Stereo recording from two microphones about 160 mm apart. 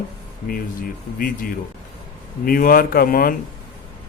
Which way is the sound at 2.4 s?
65° left (ahead or behind).